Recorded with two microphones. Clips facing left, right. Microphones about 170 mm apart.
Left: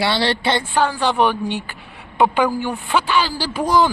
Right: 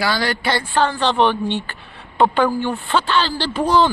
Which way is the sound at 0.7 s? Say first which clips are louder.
Right 3 dB; 10° left (ahead or behind).